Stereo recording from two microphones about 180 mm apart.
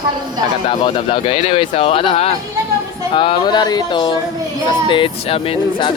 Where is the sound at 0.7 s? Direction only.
30° left (ahead or behind).